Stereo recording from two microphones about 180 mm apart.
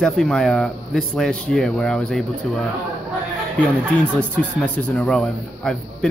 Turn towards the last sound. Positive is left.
turn(degrees=5)  # may be behind; listen again after turning